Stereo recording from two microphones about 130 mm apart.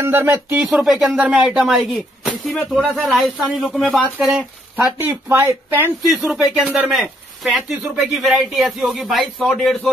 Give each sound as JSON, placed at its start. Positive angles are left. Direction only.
{"t": 0.0, "sound": "speech", "side_deg": -20}
{"t": 0.8, "sound": "speech", "side_deg": -5}
{"t": 4.4, "sound": "speech", "side_deg": -15}
{"t": 6.0, "sound": "speech", "side_deg": -5}